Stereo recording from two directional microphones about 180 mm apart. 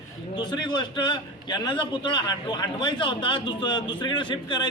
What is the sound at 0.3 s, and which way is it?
A man's voice, 25° left (ahead or behind).